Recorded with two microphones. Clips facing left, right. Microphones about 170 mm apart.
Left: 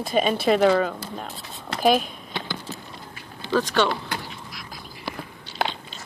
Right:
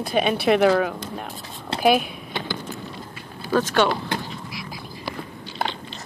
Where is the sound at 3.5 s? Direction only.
5° right (ahead or behind).